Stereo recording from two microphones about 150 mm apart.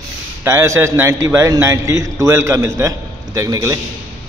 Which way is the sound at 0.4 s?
15° right (ahead or behind).